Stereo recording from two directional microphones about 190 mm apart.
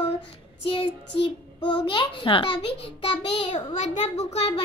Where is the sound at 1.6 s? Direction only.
25° left (ahead or behind).